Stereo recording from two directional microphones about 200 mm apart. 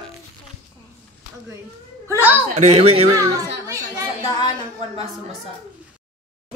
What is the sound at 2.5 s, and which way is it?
Speech, 35° right (ahead or behind).